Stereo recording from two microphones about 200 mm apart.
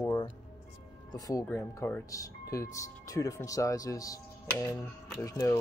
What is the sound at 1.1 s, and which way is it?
Speech, 15° left (ahead or behind).